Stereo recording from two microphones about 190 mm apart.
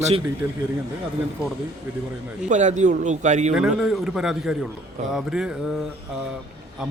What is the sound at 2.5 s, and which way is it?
A man's voice, 40° right (ahead or behind).